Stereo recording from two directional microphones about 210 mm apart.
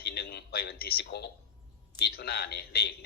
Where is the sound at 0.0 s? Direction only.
50° left (ahead or behind).